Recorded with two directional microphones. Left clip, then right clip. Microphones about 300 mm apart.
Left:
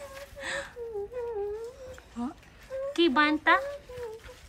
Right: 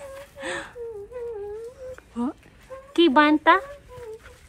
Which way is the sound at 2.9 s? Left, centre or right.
Centre.